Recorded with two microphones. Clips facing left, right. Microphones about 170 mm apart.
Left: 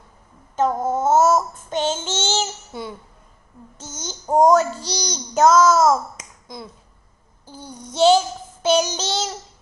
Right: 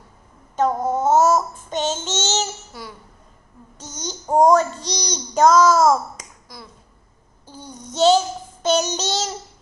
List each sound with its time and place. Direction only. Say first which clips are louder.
0.6 s child singing: even; 5° left (ahead or behind)
2.7 s a child's voice: left 6 dB; 25° left (ahead or behind)
3.7 s a sound: right 2 dB; 5° left (ahead or behind)
4.4 s child singing: even; 5° left (ahead or behind)
6.4 s speech: left 9 dB; 25° left (ahead or behind)
7.4 s child singing: even; 10° left (ahead or behind)